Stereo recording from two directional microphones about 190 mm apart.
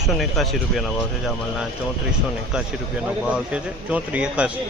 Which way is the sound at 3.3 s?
5° right (ahead or behind).